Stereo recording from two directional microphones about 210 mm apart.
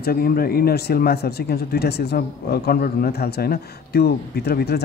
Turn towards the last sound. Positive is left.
turn(degrees=50)  # may be behind; listen again after turning